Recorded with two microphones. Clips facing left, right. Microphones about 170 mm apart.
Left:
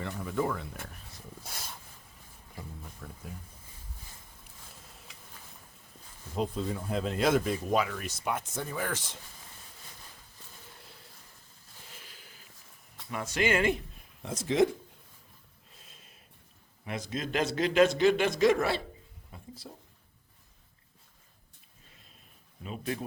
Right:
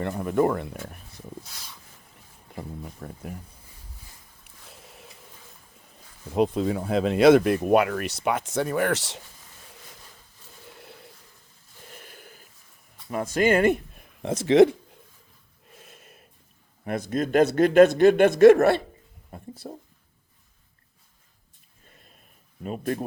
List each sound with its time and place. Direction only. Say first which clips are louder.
0.0 s a man's voice: right 9 dB; 60° right (ahead or behind)
1.5 s a sound: left 3 dB; 50° left (ahead or behind)
2.6 s a man's voice: right 8 dB; 60° right (ahead or behind)
6.3 s speech: right 9 dB; 75° right (ahead or behind)
11.9 s snort: right 9 dB; 50° right (ahead or behind)
13.1 s speech: right 7 dB; 45° right (ahead or behind)
14.2 s speech: right 9 dB; 75° right (ahead or behind)
15.8 s a sound: right 9 dB; 60° right (ahead or behind)
16.8 s a man's voice: right 9 dB; 55° right (ahead or behind)
19.3 s speech: right 8 dB; 50° right (ahead or behind)
22.6 s speech: right 7 dB; 50° right (ahead or behind)